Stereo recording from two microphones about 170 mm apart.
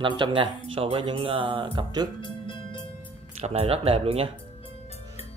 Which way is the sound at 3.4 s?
40° right (ahead or behind).